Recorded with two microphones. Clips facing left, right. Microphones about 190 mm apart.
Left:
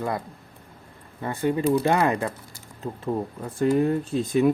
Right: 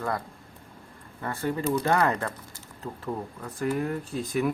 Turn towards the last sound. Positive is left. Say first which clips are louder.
# left 6 dB
turn(degrees=25)  # may be behind; listen again after turning